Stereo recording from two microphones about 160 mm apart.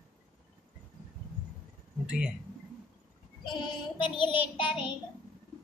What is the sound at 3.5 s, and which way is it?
Child singing, 30° left (ahead or behind).